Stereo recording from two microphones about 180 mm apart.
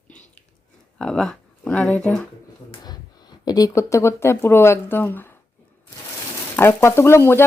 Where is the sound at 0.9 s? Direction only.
5° left (ahead or behind).